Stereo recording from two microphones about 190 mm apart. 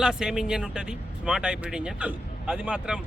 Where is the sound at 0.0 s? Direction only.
5° right (ahead or behind).